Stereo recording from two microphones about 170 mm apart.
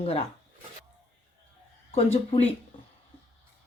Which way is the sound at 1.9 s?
35° left (ahead or behind).